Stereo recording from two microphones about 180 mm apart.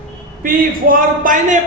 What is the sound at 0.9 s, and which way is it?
Speech, 45° right (ahead or behind).